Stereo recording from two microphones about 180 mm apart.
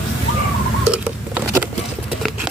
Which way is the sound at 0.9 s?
5° right (ahead or behind).